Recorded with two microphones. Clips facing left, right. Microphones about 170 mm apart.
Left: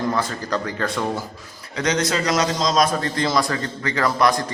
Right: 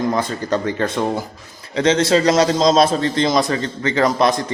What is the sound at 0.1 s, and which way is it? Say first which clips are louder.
A man's voice: right 4 dB; 20° right (ahead or behind).